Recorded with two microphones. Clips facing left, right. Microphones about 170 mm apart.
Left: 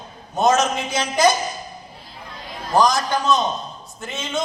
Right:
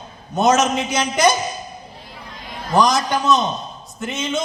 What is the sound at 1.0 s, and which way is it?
Speech, 20° right (ahead or behind).